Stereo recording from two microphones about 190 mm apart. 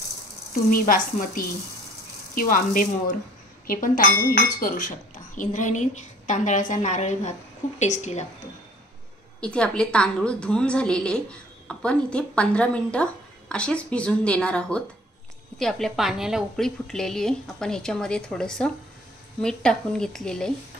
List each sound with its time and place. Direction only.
0.7 s a woman's voice: 50° left (ahead or behind)
9.4 s a woman's voice: 5° left (ahead or behind)